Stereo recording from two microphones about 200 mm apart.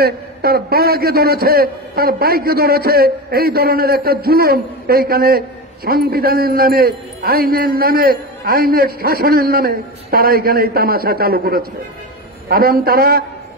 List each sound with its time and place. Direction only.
0.0 s a man's voice: 50° right (ahead or behind)